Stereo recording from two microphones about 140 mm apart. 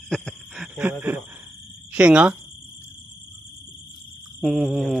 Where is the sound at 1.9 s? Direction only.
10° right (ahead or behind).